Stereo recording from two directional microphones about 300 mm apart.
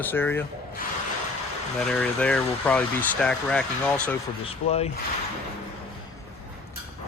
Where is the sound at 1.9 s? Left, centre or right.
Centre.